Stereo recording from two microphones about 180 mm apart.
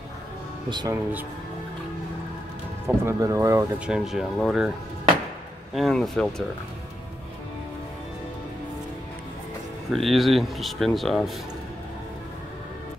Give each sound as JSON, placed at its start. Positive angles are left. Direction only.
{"t": 0.7, "sound": "speech", "side_deg": -25}
{"t": 3.0, "sound": "speech", "side_deg": -15}
{"t": 3.8, "sound": "speech", "side_deg": -5}
{"t": 9.8, "sound": "speech", "side_deg": 0}